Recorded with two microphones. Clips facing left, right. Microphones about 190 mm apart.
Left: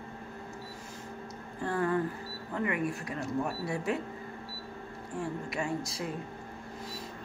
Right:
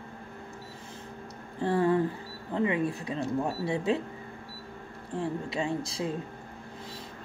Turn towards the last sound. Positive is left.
turn(degrees=-25)  # may be behind; listen again after turning